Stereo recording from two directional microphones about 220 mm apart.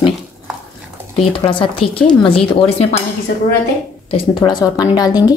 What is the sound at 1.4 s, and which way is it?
A woman's voice, 25° left (ahead or behind).